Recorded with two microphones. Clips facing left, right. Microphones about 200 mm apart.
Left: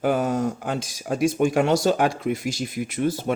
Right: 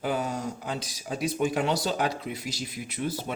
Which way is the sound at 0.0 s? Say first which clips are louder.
Left 7 dB; 50° left (ahead or behind).